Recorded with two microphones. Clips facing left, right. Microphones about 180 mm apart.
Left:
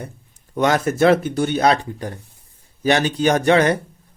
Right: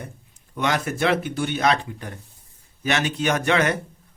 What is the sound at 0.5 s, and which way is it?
Speech, 40° left (ahead or behind).